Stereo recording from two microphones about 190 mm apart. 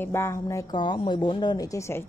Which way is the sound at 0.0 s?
15° left (ahead or behind).